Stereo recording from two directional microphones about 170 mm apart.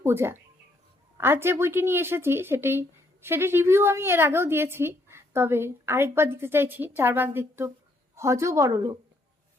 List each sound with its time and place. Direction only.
0.0 s speech: 15° right (ahead or behind)